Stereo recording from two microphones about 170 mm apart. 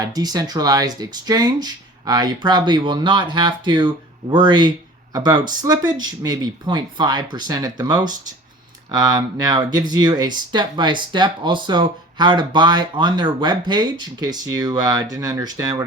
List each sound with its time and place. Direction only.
0.0 s speech: 25° right (ahead or behind)